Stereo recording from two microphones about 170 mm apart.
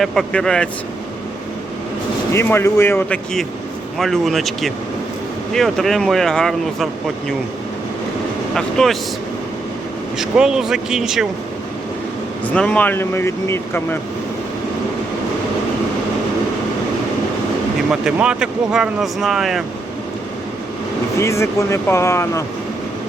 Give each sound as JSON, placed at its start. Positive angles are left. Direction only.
{"t": 0.0, "sound": "speech", "side_deg": 0}
{"t": 2.3, "sound": "speech", "side_deg": 15}
{"t": 3.9, "sound": "speech", "side_deg": 0}
{"t": 8.5, "sound": "speech", "side_deg": 0}
{"t": 10.2, "sound": "speech", "side_deg": -5}
{"t": 12.5, "sound": "speech", "side_deg": 5}
{"t": 18.0, "sound": "speech", "side_deg": -5}
{"t": 21.2, "sound": "speech", "side_deg": 15}